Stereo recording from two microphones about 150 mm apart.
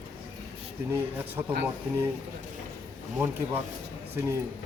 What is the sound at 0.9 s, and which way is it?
Speech, 10° right (ahead or behind).